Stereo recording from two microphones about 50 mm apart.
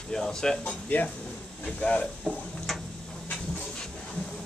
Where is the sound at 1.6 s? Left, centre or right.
Left.